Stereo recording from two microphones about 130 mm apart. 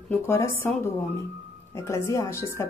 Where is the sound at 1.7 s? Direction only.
20° left (ahead or behind).